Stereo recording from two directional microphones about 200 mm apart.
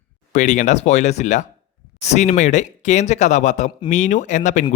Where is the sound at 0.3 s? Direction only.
40° left (ahead or behind).